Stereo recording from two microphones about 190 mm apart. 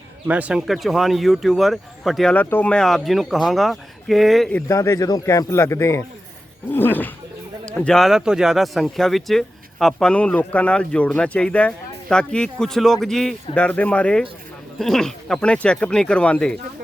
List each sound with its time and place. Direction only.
0.3 s speech: 5° right (ahead or behind)
4.7 s a man's voice: 15° left (ahead or behind)